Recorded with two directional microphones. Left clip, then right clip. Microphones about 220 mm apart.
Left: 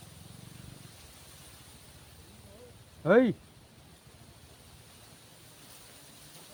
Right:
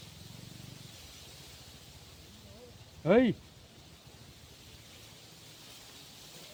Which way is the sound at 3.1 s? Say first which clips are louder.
Left 2 dB; 20° left (ahead or behind).